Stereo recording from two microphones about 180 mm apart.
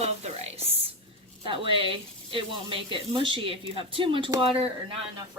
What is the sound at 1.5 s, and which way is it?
Speech, 30° right (ahead or behind).